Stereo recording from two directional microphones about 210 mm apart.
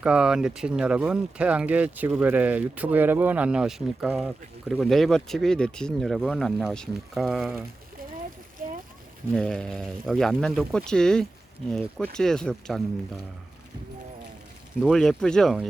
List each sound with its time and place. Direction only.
0.0 s speech: 5° right (ahead or behind)
9.3 s speech: 5° left (ahead or behind)
14.8 s speech: centre (ahead or behind)